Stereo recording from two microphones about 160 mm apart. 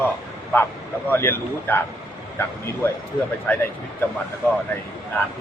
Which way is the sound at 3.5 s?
10° left (ahead or behind).